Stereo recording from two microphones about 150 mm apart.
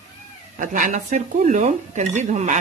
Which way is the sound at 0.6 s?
60° right (ahead or behind).